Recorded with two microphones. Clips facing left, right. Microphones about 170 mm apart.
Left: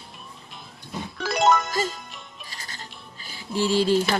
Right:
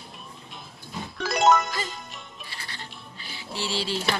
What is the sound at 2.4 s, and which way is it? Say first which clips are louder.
Music: even; 40° left (ahead or behind).